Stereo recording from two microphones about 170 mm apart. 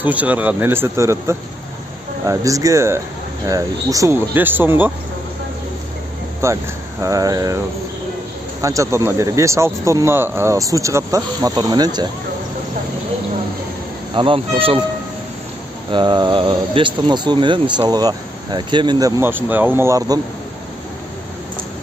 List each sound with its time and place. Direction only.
0.0 s speech: 10° right (ahead or behind)
6.4 s speech: 15° right (ahead or behind)
14.1 s speech: 30° right (ahead or behind)
15.9 s speech: 25° right (ahead or behind)